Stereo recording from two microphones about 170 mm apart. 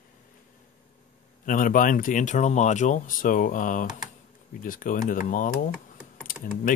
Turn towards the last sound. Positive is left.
turn(degrees=55)  # may be behind; listen again after turning